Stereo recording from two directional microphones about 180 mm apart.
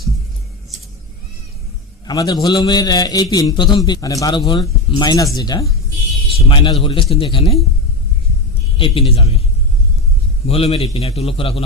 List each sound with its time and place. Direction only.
2.0 s a man's voice: 20° left (ahead or behind)
8.8 s a man's voice: 30° left (ahead or behind)
10.4 s a man's voice: 35° left (ahead or behind)